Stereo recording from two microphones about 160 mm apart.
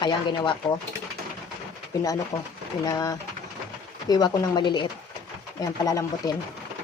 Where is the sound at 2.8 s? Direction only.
20° left (ahead or behind).